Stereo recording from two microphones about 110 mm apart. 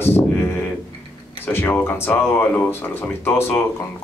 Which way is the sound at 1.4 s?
20° left (ahead or behind).